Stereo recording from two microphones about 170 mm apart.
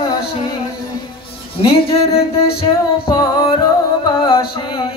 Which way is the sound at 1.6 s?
35° left (ahead or behind).